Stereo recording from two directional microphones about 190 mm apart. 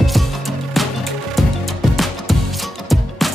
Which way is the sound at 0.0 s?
Centre (ahead or behind).